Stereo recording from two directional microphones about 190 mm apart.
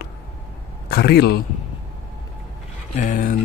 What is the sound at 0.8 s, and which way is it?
Speech, 55° left (ahead or behind).